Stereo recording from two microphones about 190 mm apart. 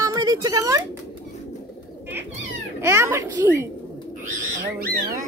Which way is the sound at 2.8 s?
15° right (ahead or behind).